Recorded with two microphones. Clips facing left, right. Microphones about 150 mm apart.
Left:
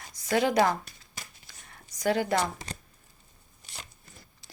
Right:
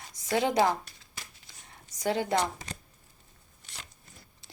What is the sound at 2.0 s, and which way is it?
Speech, 25° right (ahead or behind).